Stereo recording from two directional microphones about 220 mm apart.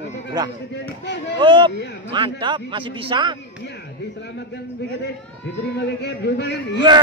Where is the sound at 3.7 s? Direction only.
50° left (ahead or behind).